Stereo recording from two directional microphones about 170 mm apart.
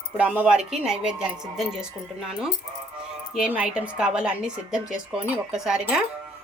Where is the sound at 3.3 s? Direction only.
5° right (ahead or behind).